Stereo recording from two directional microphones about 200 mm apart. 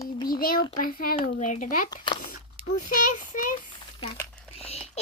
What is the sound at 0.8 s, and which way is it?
A child's voice, 45° left (ahead or behind).